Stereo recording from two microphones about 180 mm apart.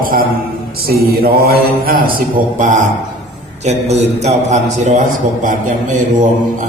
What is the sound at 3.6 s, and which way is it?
A man's voice, 40° right (ahead or behind).